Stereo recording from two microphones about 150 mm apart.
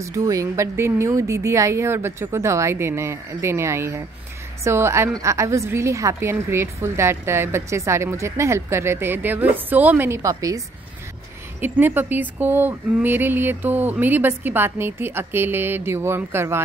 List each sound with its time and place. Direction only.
0.0 s a woman's voice: 20° right (ahead or behind)
11.6 s a woman's voice: 15° right (ahead or behind)